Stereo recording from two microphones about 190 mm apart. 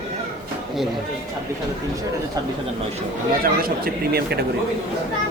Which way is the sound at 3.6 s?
55° right (ahead or behind).